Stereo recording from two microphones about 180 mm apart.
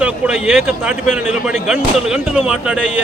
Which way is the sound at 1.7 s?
5° right (ahead or behind).